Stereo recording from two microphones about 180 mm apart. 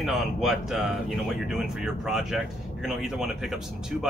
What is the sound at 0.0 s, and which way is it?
Speech, centre (ahead or behind).